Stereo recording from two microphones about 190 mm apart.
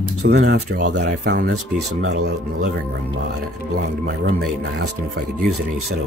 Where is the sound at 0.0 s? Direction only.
60° right (ahead or behind).